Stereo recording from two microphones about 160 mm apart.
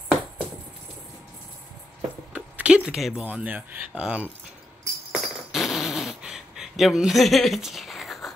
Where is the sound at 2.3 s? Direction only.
5° right (ahead or behind).